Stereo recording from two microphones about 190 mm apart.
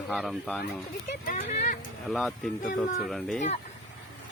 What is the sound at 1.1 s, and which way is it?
Speech, 50° left (ahead or behind).